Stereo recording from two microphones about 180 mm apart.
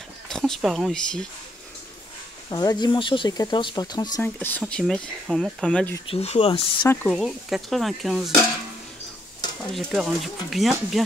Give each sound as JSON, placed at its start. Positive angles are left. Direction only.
{"t": 0.3, "sound": "speech", "side_deg": 0}
{"t": 2.5, "sound": "speech", "side_deg": 20}
{"t": 4.2, "sound": "speech", "side_deg": 10}
{"t": 6.0, "sound": "speech", "side_deg": 35}
{"t": 6.9, "sound": "speech", "side_deg": 10}
{"t": 7.2, "sound": "speech", "side_deg": 0}
{"t": 9.7, "sound": "speech", "side_deg": 0}